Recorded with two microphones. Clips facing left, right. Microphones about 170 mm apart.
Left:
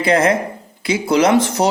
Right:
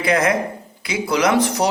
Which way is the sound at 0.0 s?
30° left (ahead or behind).